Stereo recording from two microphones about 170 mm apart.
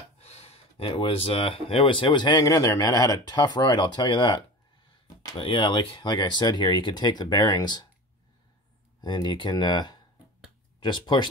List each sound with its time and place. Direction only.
0.2 s speech: 35° left (ahead or behind)
9.0 s speech: 25° left (ahead or behind)